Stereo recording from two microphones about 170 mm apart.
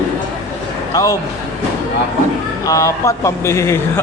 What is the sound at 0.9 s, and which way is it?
Speech, 20° left (ahead or behind).